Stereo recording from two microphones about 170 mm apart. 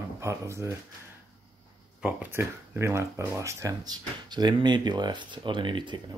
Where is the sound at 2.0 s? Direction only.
10° right (ahead or behind).